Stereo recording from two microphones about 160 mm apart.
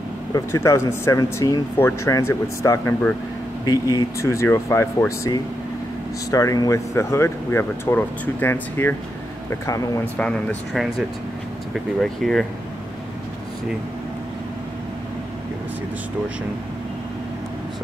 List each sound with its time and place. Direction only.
0.3 s speech: 20° left (ahead or behind)
3.6 s speech: 25° left (ahead or behind)
10.1 s speech: 5° left (ahead or behind)